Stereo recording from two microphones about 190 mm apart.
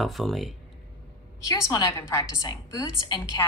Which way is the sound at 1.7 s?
20° left (ahead or behind).